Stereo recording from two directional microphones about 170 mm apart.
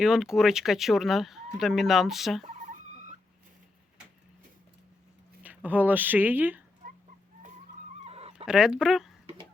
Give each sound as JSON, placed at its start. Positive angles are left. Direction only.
{"t": 0.0, "sound": "speech", "side_deg": -5}
{"t": 5.4, "sound": "speech", "side_deg": -10}
{"t": 8.0, "sound": "a sound", "side_deg": -35}
{"t": 8.4, "sound": "speech", "side_deg": -5}